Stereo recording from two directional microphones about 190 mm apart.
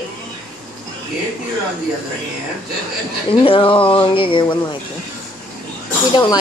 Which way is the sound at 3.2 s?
30° left (ahead or behind).